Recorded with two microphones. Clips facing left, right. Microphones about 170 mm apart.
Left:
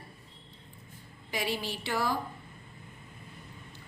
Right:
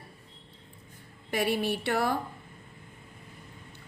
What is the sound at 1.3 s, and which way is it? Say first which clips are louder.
Speech: right 6 dB; 60° right (ahead or behind).